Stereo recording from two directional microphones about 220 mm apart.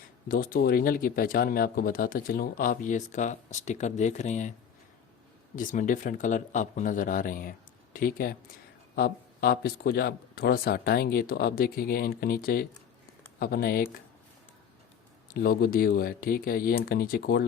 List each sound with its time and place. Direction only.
0.3 s speech: 40° left (ahead or behind)
5.5 s speech: 35° left (ahead or behind)
15.3 s speech: 40° left (ahead or behind)